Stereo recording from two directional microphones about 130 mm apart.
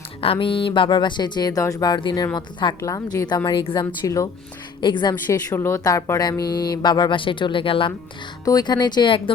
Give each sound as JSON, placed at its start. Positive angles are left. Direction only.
{"t": 0.2, "sound": "speech", "side_deg": 45}
{"t": 4.0, "sound": "speech", "side_deg": 25}
{"t": 4.8, "sound": "speech", "side_deg": 35}
{"t": 5.3, "sound": "speech", "side_deg": 20}
{"t": 8.4, "sound": "speech", "side_deg": 30}